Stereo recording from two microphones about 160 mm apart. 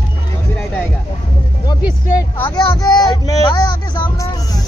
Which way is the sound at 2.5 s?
25° left (ahead or behind).